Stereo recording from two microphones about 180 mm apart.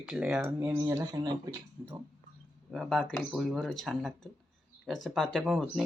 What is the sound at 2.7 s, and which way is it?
Speech, centre (ahead or behind).